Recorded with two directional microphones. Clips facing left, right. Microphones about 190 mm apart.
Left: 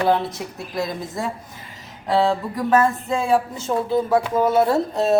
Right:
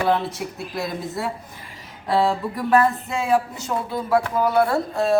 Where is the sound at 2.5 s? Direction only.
25° left (ahead or behind).